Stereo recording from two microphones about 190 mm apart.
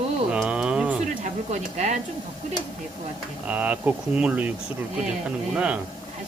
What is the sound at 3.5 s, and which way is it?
Speech, 10° right (ahead or behind).